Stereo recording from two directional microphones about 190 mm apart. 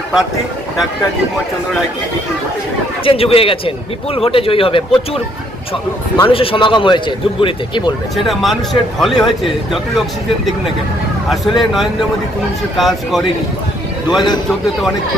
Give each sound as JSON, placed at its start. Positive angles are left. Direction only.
{"t": 3.0, "sound": "a man's voice", "side_deg": 30}
{"t": 6.2, "sound": "a man's voice", "side_deg": 30}
{"t": 8.1, "sound": "speech", "side_deg": 0}
{"t": 11.3, "sound": "speech", "side_deg": 0}
{"t": 14.1, "sound": "a man's voice", "side_deg": 20}